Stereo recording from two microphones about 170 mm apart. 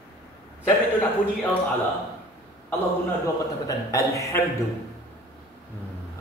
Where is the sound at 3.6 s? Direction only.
20° left (ahead or behind).